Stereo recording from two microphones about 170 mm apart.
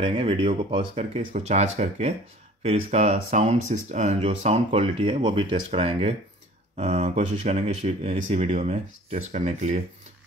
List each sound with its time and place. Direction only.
0.0 s speech: 30° right (ahead or behind)